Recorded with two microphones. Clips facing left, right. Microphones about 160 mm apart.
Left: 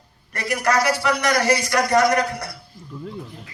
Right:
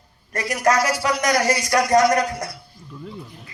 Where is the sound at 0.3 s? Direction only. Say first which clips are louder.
Right 1 dB; 40° right (ahead or behind).